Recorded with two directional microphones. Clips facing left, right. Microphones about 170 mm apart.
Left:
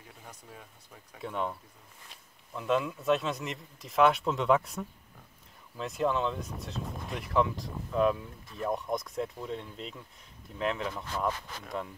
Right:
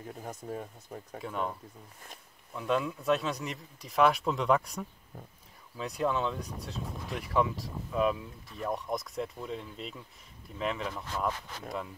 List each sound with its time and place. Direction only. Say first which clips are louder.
0.1 s speech: right 11 dB; 45° right (ahead or behind)
1.2 s speech: left 1 dB; centre (ahead or behind)
2.5 s speech: left 1 dB; centre (ahead or behind)